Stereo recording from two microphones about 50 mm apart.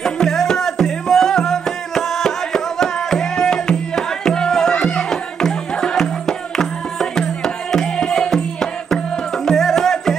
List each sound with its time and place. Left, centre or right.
0.0 s music: centre
9.5 s music: centre